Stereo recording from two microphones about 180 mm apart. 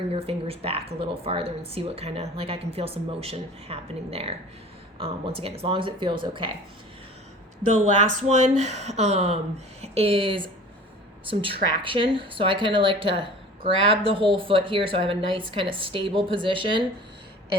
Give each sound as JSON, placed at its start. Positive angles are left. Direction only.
{"t": 0.1, "sound": "a woman's voice", "side_deg": -35}
{"t": 7.9, "sound": "a woman's voice", "side_deg": -40}